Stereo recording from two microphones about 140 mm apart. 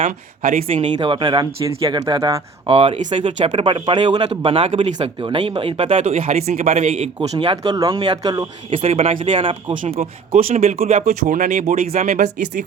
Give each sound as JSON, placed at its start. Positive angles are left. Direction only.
{"t": 0.0, "sound": "speech", "side_deg": -65}
{"t": 0.8, "sound": "speech", "side_deg": -40}
{"t": 2.6, "sound": "speech", "side_deg": -45}
{"t": 4.3, "sound": "speech", "side_deg": -45}
{"t": 5.9, "sound": "speech", "side_deg": -65}
{"t": 6.7, "sound": "speech", "side_deg": -55}
{"t": 7.2, "sound": "speech", "side_deg": -40}
{"t": 7.7, "sound": "speech", "side_deg": -30}
{"t": 8.8, "sound": "speech", "side_deg": -50}
{"t": 9.9, "sound": "speech", "side_deg": -50}
{"t": 11.3, "sound": "speech", "side_deg": -70}